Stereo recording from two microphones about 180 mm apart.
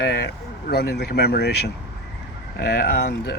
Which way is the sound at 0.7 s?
65° left (ahead or behind).